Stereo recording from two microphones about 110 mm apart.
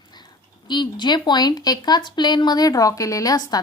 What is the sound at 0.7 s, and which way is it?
A woman's voice, 40° left (ahead or behind).